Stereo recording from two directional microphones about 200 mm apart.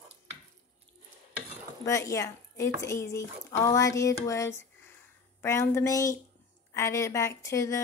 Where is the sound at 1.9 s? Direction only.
15° left (ahead or behind).